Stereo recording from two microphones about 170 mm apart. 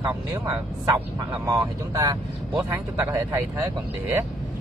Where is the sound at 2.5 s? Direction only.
15° right (ahead or behind).